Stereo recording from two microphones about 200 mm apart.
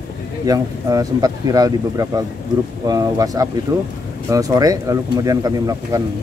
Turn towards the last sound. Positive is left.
turn(degrees=-20)  # may be behind; listen again after turning